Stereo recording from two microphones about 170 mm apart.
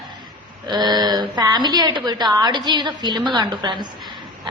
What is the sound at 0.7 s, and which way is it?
A woman's voice, 25° right (ahead or behind).